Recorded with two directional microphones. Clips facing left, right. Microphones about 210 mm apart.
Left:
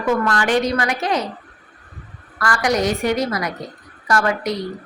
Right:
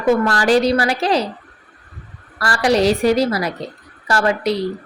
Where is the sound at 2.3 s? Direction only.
30° right (ahead or behind).